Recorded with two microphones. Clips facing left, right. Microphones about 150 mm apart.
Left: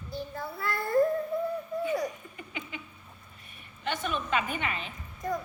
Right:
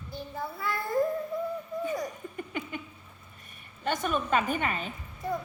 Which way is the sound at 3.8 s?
45° right (ahead or behind).